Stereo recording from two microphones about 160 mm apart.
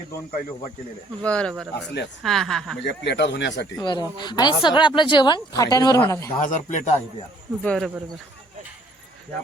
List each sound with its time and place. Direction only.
1.2 s speech: 5° left (ahead or behind)
2.8 s speech: 90° left
3.8 s speech: 30° left (ahead or behind)
6.4 s speech: 50° left (ahead or behind)
7.6 s speech: 5° left (ahead or behind)